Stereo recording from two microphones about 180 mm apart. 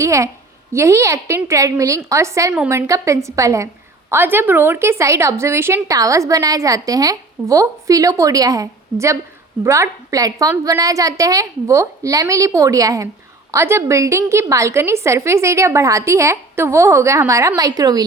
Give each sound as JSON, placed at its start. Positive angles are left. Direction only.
{"t": 0.0, "sound": "a woman's voice", "side_deg": -15}